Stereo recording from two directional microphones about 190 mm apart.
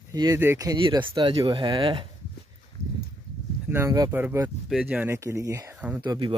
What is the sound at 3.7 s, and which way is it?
Speech, 15° right (ahead or behind).